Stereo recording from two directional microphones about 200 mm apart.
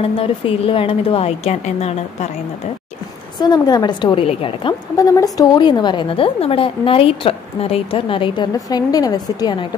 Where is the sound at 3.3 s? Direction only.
20° left (ahead or behind).